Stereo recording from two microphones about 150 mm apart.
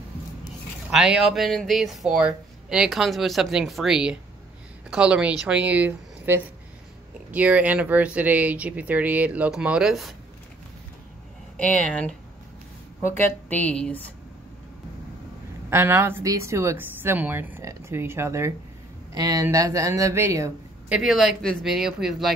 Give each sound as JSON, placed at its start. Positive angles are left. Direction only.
{"t": 0.8, "sound": "speech", "side_deg": -5}
{"t": 11.5, "sound": "speech", "side_deg": 10}
{"t": 13.5, "sound": "speech", "side_deg": 10}
{"t": 15.7, "sound": "speech", "side_deg": -15}
{"t": 20.9, "sound": "speech", "side_deg": -5}